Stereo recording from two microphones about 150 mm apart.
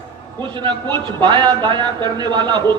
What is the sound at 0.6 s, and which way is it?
Speech, 30° right (ahead or behind).